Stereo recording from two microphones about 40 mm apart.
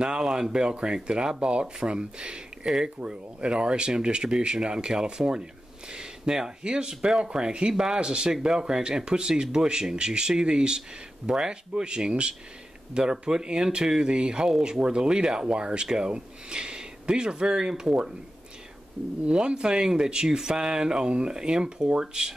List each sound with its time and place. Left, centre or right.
0.0 s speech: right
19.2 s speech: right